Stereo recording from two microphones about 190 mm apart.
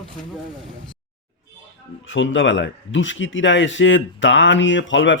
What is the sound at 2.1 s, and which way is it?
Speech, 75° left (ahead or behind).